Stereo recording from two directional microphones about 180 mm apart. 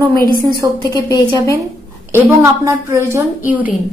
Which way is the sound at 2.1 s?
15° right (ahead or behind).